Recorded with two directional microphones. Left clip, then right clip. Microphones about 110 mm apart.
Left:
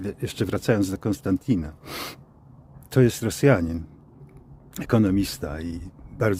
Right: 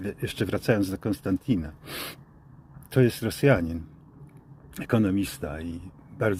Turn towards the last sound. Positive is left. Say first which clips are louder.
# left 2 dB
turn(degrees=50)  # may be behind; listen again after turning